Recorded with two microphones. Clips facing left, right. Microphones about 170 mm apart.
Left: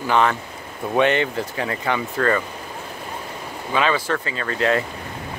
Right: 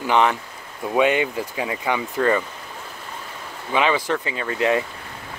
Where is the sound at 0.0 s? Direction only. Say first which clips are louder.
Even; 15° right (ahead or behind).